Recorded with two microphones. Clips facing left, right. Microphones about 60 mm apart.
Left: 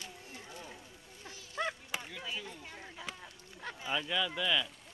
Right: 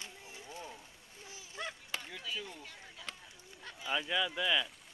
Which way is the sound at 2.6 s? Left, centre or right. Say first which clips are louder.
Left 4 dB; left.